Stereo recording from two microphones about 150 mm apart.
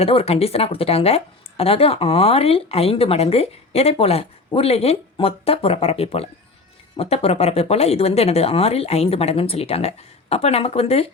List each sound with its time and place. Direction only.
0.0 s a woman's voice: 40° left (ahead or behind)